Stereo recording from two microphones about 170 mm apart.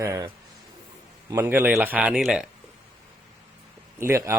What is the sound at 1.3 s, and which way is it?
A man's voice, 15° right (ahead or behind).